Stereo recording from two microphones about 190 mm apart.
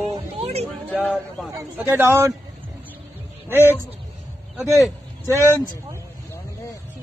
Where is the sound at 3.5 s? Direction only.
10° right (ahead or behind).